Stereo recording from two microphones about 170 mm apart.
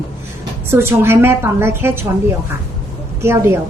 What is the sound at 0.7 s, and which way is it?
A woman's voice, 15° right (ahead or behind).